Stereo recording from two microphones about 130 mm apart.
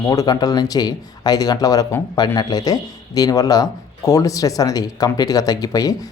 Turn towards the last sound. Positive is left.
turn(degrees=25)  # may be behind; listen again after turning